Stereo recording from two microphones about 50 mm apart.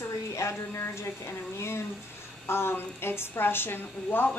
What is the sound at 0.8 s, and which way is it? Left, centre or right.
A woman's voice, left.